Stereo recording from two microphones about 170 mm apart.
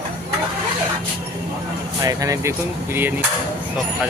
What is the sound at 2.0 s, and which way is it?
Speech, 20° right (ahead or behind).